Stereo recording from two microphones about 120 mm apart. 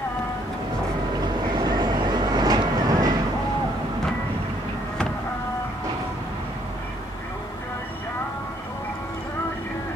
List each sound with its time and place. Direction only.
1.2 s vehicle: 35° right (ahead or behind)